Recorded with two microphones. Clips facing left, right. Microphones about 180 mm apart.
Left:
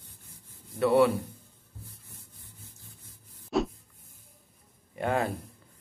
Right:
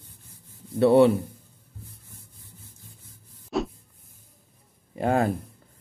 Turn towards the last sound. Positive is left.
turn(degrees=-35)  # may be behind; listen again after turning